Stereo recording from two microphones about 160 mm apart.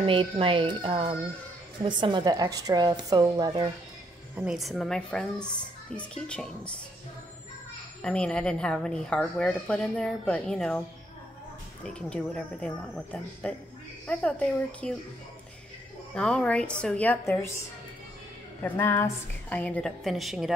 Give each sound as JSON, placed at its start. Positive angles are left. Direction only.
{"t": 0.0, "sound": "a woman's voice", "side_deg": -35}
{"t": 4.4, "sound": "a woman's voice", "side_deg": -5}
{"t": 8.0, "sound": "a woman's voice", "side_deg": 5}
{"t": 11.8, "sound": "a woman's voice", "side_deg": 5}
{"t": 16.2, "sound": "a woman's voice", "side_deg": 5}
{"t": 18.6, "sound": "a woman's voice", "side_deg": 15}